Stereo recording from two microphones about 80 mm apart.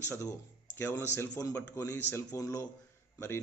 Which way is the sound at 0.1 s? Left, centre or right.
Left.